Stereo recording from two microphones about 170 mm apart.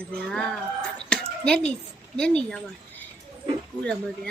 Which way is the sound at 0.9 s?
5° left (ahead or behind).